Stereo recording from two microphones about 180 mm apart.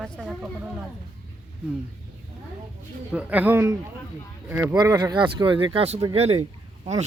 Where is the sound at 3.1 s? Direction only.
5° right (ahead or behind).